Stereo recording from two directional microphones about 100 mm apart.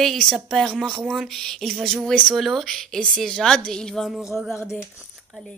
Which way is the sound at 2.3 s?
Centre (ahead or behind).